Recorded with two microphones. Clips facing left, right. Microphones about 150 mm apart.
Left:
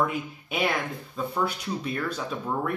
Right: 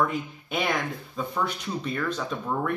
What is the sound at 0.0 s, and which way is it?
A man's voice, 5° left (ahead or behind).